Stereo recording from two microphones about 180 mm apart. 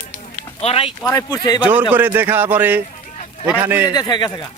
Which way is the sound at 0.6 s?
30° left (ahead or behind).